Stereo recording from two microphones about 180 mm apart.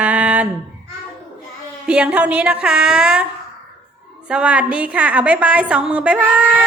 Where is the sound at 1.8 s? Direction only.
5° right (ahead or behind).